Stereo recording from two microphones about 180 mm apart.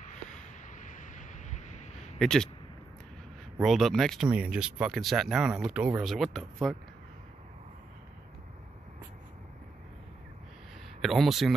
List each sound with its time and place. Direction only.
0.4 s vehicle: 45° left (ahead or behind)
2.1 s speech: 5° left (ahead or behind)
3.6 s speech: centre (ahead or behind)
11.0 s speech: centre (ahead or behind)